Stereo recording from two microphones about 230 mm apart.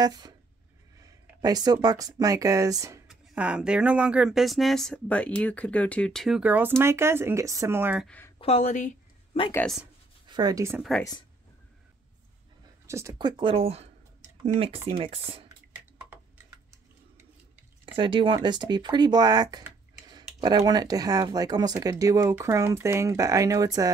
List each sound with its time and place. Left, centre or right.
0.0 s speech: centre
8.4 s a woman's voice: left
9.5 s speech: centre
10.2 s speech: centre
10.8 s speech: centre
12.8 s speech: centre
17.9 s speech: right